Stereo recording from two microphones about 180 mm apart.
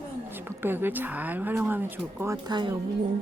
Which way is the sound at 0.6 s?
10° right (ahead or behind).